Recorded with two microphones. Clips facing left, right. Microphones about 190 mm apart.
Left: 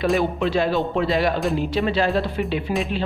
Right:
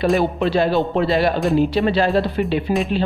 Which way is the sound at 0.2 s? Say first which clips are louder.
Right 3 dB; 35° right (ahead or behind).